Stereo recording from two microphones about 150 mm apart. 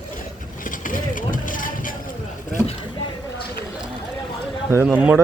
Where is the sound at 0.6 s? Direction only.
65° left (ahead or behind).